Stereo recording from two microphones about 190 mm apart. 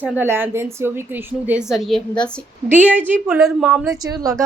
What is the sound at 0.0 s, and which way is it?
A woman's voice, 10° right (ahead or behind).